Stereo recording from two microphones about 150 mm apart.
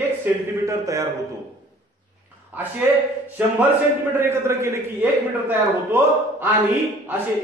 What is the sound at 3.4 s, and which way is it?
A man's voice, 10° right (ahead or behind).